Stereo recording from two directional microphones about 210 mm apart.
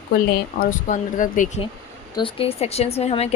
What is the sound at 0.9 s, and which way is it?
Speech, 40° left (ahead or behind).